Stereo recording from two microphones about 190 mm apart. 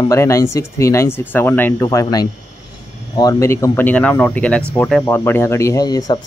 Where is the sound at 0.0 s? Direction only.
15° left (ahead or behind).